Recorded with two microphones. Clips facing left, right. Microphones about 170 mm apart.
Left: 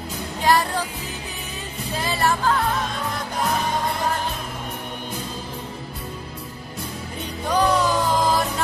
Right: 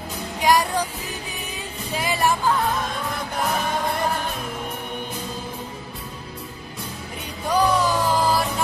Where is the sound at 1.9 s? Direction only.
15° right (ahead or behind).